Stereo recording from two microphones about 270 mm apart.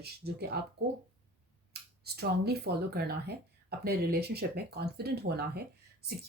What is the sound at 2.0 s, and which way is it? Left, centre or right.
Speech, right.